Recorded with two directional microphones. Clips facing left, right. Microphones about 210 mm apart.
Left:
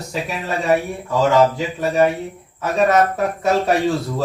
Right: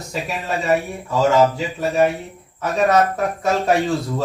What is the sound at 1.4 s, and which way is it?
Speech, centre (ahead or behind).